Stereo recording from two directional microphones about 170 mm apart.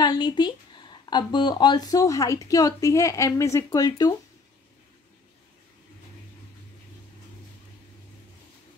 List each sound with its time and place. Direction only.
0.0 s speech: 25° left (ahead or behind)